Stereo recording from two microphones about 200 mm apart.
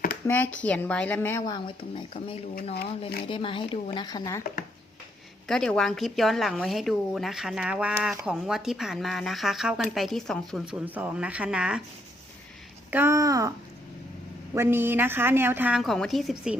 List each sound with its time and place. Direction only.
0.3 s a woman's voice: 10° left (ahead or behind)
5.5 s speech: 5° left (ahead or behind)
12.9 s a woman's voice: 10° right (ahead or behind)
14.5 s a woman's voice: 10° right (ahead or behind)